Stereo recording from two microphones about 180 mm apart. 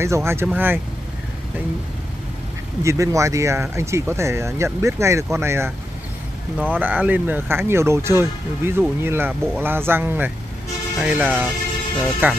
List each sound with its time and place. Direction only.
0.0 s speech: 15° right (ahead or behind)
2.8 s speech: 15° right (ahead or behind)